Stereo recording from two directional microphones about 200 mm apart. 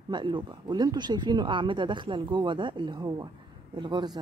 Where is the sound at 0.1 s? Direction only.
25° right (ahead or behind).